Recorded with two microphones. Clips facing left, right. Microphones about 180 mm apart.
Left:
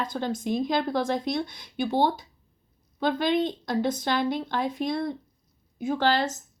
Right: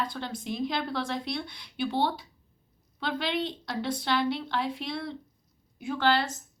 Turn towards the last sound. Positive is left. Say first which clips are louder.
# left 2 dB
turn(degrees=45)  # may be behind; listen again after turning